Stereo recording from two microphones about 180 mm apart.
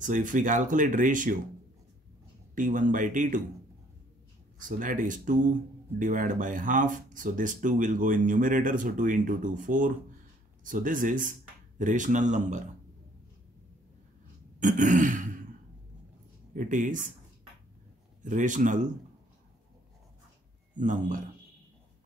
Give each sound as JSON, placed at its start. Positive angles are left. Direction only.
{"t": 0.0, "sound": "speech", "side_deg": -45}
{"t": 2.5, "sound": "speech", "side_deg": -45}
{"t": 4.6, "sound": "speech", "side_deg": -50}
{"t": 14.6, "sound": "speech", "side_deg": -45}
{"t": 16.5, "sound": "speech", "side_deg": -45}
{"t": 18.2, "sound": "speech", "side_deg": -45}
{"t": 20.7, "sound": "speech", "side_deg": -45}